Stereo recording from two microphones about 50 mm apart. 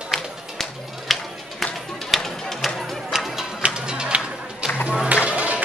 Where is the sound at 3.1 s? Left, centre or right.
Centre.